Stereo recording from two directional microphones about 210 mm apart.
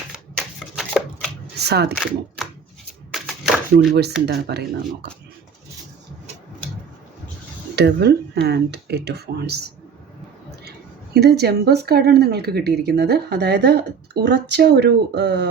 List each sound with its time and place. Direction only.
0.3 s shuffling cards: centre (ahead or behind)
1.5 s speech: 50° right (ahead or behind)
1.9 s speech: centre (ahead or behind)
3.1 s a sound: centre (ahead or behind)
3.9 s speech: 50° right (ahead or behind)
7.8 s speech: 50° right (ahead or behind)
11.1 s speech: 50° right (ahead or behind)